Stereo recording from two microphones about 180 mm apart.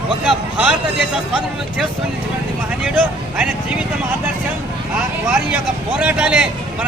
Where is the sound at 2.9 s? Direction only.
10° right (ahead or behind).